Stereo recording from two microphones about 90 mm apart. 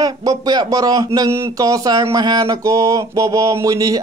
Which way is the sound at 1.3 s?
40° right (ahead or behind).